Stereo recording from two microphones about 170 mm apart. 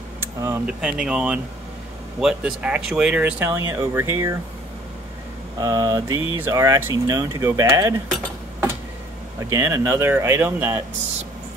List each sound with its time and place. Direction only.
0.2 s speech: 15° right (ahead or behind)
0.7 s speech: 5° right (ahead or behind)
5.6 s speech: 20° right (ahead or behind)
9.4 s speech: 15° right (ahead or behind)